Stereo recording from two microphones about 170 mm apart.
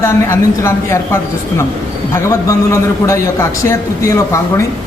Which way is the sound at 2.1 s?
20° left (ahead or behind).